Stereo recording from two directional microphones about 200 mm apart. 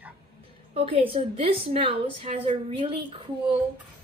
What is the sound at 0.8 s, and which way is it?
A woman's voice, 25° right (ahead or behind).